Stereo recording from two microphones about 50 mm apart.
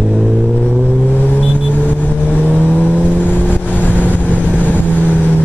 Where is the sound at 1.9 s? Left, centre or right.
Left.